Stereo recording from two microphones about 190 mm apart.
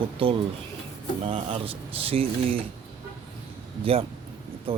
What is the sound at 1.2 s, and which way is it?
Speech, 30° right (ahead or behind).